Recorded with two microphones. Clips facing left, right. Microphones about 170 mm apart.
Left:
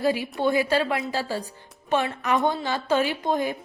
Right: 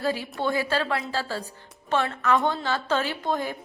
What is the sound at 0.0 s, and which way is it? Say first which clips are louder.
A woman's voice: left 4 dB; 15° left (ahead or behind).